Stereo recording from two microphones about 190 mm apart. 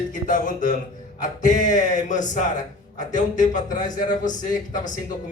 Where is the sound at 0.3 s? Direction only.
45° left (ahead or behind).